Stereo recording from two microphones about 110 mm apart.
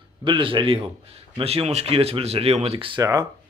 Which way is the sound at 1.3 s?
65° right (ahead or behind).